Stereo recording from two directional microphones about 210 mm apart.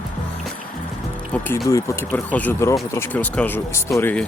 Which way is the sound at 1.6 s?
15° left (ahead or behind).